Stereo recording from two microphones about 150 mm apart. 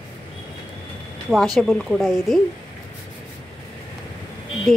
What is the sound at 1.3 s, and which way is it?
A woman's voice, centre (ahead or behind).